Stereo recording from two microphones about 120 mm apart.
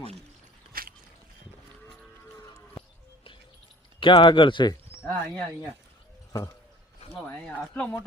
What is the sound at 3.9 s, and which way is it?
Speech, 45° left (ahead or behind).